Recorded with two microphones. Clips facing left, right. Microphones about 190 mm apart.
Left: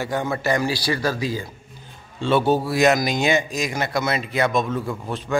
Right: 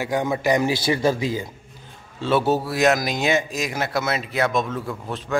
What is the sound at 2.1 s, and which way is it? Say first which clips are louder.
Speech: left 1 dB; 5° right (ahead or behind).